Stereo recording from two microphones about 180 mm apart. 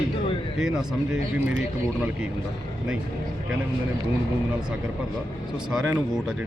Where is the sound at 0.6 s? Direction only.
5° right (ahead or behind).